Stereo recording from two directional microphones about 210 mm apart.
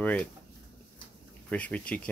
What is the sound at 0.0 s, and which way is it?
Speech, 10° left (ahead or behind).